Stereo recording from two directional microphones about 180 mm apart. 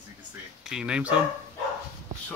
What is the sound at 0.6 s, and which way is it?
Speech, 5° right (ahead or behind).